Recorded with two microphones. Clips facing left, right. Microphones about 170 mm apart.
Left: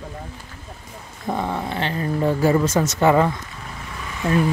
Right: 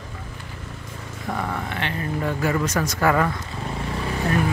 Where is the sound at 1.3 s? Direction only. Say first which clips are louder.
Left 4 dB; 25° left (ahead or behind).